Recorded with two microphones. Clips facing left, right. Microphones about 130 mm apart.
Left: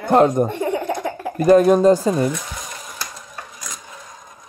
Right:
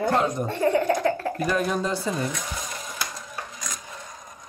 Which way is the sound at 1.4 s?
45° left (ahead or behind).